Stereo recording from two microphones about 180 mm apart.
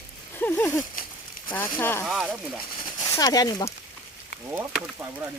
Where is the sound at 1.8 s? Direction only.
10° left (ahead or behind).